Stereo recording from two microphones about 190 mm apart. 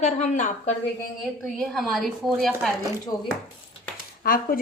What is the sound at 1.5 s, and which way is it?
Speech, centre (ahead or behind).